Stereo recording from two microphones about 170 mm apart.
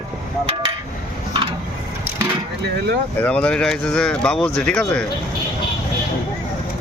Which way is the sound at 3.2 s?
5° left (ahead or behind).